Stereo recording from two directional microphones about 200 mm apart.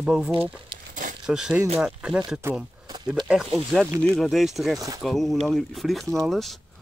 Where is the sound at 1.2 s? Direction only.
5° right (ahead or behind).